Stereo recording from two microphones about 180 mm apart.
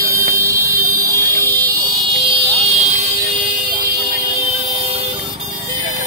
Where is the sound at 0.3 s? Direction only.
15° right (ahead or behind).